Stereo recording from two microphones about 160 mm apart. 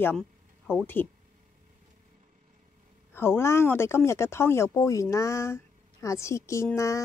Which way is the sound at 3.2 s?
15° left (ahead or behind).